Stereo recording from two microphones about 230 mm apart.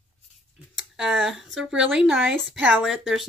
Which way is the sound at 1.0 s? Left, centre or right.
Centre.